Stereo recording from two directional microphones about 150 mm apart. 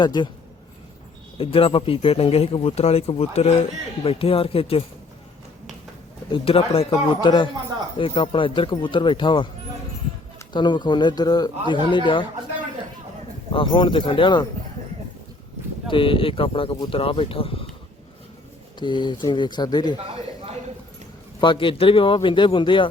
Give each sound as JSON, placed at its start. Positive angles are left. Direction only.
{"t": 0.0, "sound": "speech", "side_deg": 30}
{"t": 1.4, "sound": "speech", "side_deg": 35}
{"t": 6.3, "sound": "speech", "side_deg": 40}
{"t": 10.5, "sound": "speech", "side_deg": 30}
{"t": 13.5, "sound": "speech", "side_deg": 35}
{"t": 15.9, "sound": "speech", "side_deg": 35}
{"t": 18.8, "sound": "speech", "side_deg": 30}
{"t": 21.4, "sound": "speech", "side_deg": 35}